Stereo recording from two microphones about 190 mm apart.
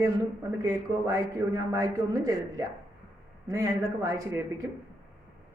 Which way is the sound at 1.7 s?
20° right (ahead or behind).